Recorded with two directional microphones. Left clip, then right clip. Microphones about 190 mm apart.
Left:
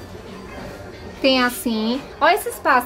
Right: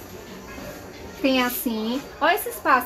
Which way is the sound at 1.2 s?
20° left (ahead or behind).